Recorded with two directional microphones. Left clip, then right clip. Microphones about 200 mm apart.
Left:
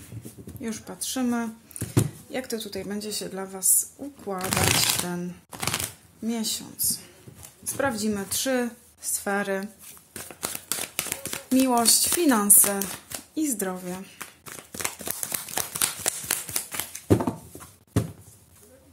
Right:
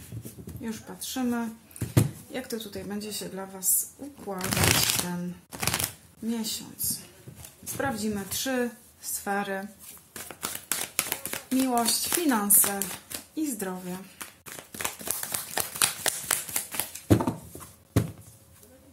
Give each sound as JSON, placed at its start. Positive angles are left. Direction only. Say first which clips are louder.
{"t": 0.6, "sound": "speech", "louder": "left 4 dB", "side_deg": 45}
{"t": 4.4, "sound": "speech", "louder": "left 1 dB", "side_deg": 0}
{"t": 5.5, "sound": "a sound", "louder": "even", "side_deg": 0}
{"t": 6.2, "sound": "a woman's voice", "louder": "left 3 dB", "side_deg": 45}
{"t": 10.1, "sound": "a sound", "louder": "left 2 dB", "side_deg": 15}
{"t": 11.7, "sound": "a woman's voice", "louder": "left 3 dB", "side_deg": 50}
{"t": 12.5, "sound": "speech", "louder": "left 3 dB", "side_deg": 20}
{"t": 13.3, "sound": "a woman's voice", "louder": "left 4 dB", "side_deg": 45}
{"t": 14.1, "sound": "a sound", "louder": "left 2 dB", "side_deg": 20}